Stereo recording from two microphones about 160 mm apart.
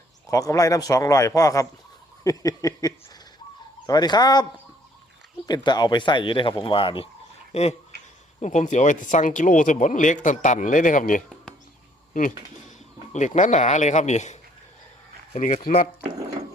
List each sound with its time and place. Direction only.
0.3 s speech: 20° left (ahead or behind)
5.5 s speech: 25° left (ahead or behind); by 11.2 s 55° left (ahead or behind)
13.1 s speech: 50° left (ahead or behind)